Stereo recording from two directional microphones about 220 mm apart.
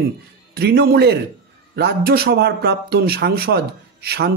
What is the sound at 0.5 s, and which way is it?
A woman's voice, 45° right (ahead or behind).